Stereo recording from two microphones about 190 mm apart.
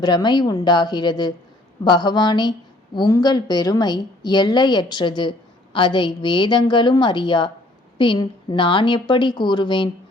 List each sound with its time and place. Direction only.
0.0 s a woman's voice: 20° left (ahead or behind)